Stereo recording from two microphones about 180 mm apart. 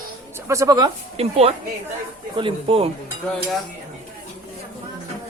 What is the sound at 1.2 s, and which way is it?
Speech, 35° right (ahead or behind).